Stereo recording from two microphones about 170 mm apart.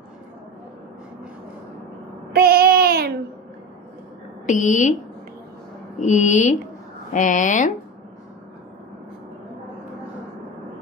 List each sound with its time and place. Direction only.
2.3 s babbling: 65° right (ahead or behind)
4.5 s speech: 45° left (ahead or behind)
5.9 s speech: 45° left (ahead or behind)